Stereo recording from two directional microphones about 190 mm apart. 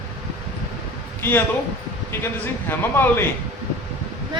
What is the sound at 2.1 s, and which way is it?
A man's voice, 10° left (ahead or behind).